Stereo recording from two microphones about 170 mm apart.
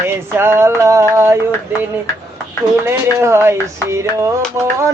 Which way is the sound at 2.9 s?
15° right (ahead or behind).